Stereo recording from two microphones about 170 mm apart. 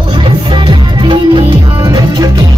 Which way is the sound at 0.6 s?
30° right (ahead or behind).